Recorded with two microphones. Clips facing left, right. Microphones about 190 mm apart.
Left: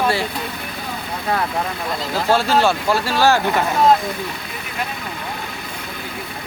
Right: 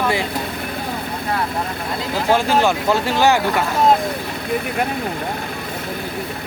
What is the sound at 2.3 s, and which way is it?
Speech, 15° right (ahead or behind).